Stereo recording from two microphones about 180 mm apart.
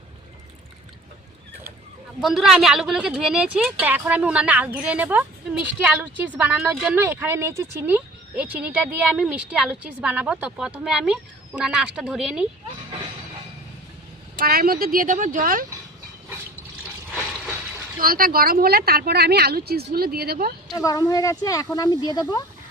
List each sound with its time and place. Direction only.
2.2 s speech: centre (ahead or behind)
14.3 s a woman's voice: 55° right (ahead or behind)
18.0 s speech: 55° right (ahead or behind)
20.7 s speech: 20° left (ahead or behind)